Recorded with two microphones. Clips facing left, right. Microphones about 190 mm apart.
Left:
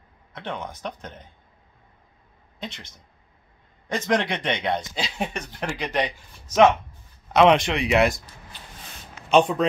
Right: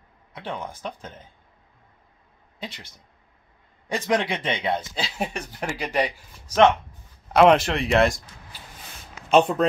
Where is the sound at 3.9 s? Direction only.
5° right (ahead or behind).